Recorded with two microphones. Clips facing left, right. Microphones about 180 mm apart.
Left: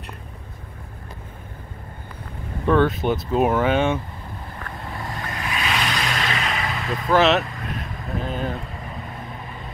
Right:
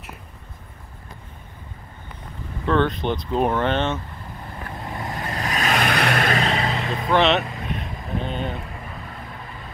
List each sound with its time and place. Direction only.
2.6 s speech: 10° left (ahead or behind)
4.6 s vehicle: 20° right (ahead or behind)
5.3 s vehicle: 40° right (ahead or behind); by 6.3 s 60° right (ahead or behind)
6.3 s vehicle: 30° right (ahead or behind)
7.1 s vehicle: centre (ahead or behind)